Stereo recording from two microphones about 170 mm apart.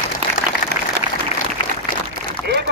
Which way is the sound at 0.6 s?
50° left (ahead or behind).